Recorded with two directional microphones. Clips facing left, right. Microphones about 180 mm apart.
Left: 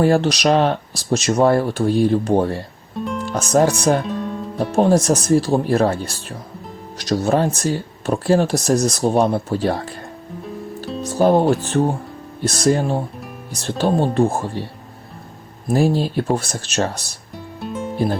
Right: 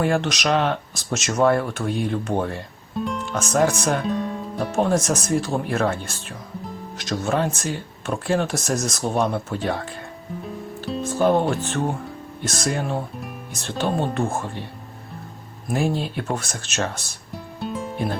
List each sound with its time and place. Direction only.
0.0 s speech: 35° left (ahead or behind)
3.0 s music: centre (ahead or behind)
3.2 s speech: 35° left (ahead or behind)
4.0 s music: centre (ahead or behind)
4.7 s speech: 35° left (ahead or behind)
11.0 s speech: 40° left (ahead or behind)
15.7 s speech: 35° left (ahead or behind)
17.3 s music: centre (ahead or behind)
17.9 s music: 35° left (ahead or behind)